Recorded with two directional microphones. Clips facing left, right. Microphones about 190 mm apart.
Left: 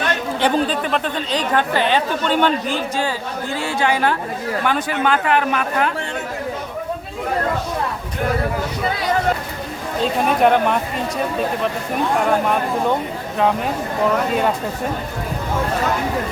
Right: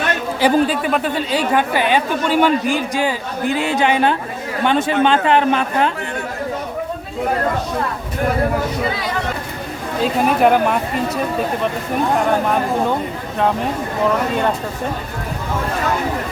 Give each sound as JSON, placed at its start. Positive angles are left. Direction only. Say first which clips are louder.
{"t": 0.3, "sound": "a woman's voice", "louder": "right 4 dB", "side_deg": -5}
{"t": 10.0, "sound": "speech", "louder": "right 1 dB", "side_deg": -5}